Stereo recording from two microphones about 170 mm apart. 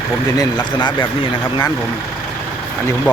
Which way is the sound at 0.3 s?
25° left (ahead or behind).